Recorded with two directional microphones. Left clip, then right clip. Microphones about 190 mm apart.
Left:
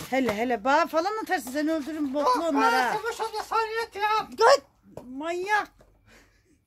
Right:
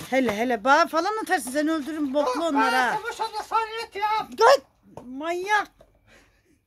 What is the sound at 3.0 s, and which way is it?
Speech, 5° left (ahead or behind).